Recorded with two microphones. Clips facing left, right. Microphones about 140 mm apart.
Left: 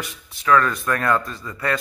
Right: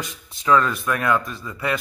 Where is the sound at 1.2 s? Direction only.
20° right (ahead or behind).